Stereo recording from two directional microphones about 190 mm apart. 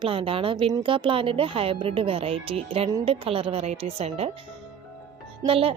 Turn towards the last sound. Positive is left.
turn(degrees=-30)  # may be behind; listen again after turning